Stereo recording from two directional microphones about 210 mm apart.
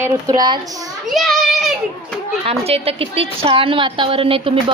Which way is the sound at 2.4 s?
30° right (ahead or behind).